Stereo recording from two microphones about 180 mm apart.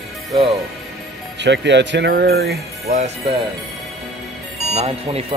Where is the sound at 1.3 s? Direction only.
75° right (ahead or behind).